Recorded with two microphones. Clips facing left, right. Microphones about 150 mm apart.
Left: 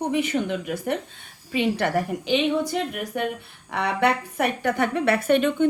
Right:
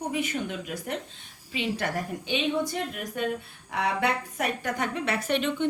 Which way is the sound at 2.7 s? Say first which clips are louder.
Left 5 dB; 75° left (ahead or behind).